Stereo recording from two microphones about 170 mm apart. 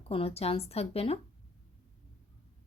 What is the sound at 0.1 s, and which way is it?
Speech, 35° left (ahead or behind).